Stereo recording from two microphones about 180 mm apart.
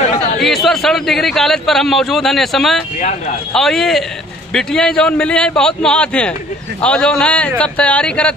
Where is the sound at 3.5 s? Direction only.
Centre (ahead or behind).